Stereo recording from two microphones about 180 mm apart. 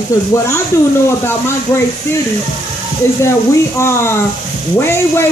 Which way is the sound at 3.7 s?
15° left (ahead or behind).